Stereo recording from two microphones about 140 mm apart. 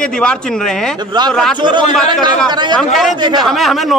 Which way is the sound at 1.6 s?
35° right (ahead or behind).